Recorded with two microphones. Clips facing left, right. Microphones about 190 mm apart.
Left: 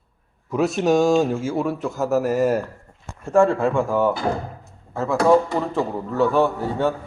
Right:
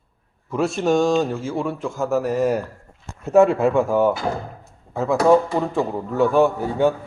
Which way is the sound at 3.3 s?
20° right (ahead or behind).